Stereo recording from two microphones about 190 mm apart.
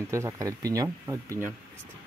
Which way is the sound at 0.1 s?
15° right (ahead or behind).